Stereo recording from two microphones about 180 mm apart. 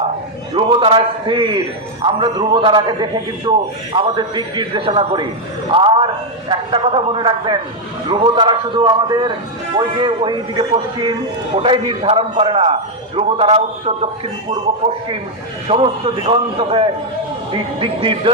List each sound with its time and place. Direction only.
0.5 s a man's voice: 30° right (ahead or behind)
15.6 s a man's voice: 30° right (ahead or behind)